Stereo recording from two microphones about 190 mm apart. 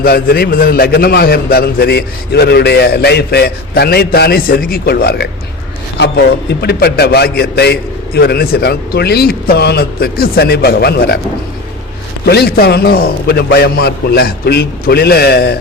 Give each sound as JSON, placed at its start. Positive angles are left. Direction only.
{"t": 0.0, "sound": "a man's voice", "side_deg": 55}
{"t": 12.2, "sound": "a man's voice", "side_deg": 60}